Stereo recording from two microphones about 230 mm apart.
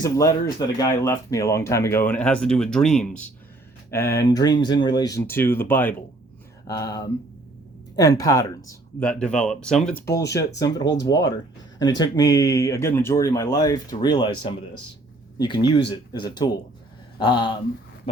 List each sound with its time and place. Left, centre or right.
0.0 s speech: centre
4.2 s speech: centre
9.0 s speech: centre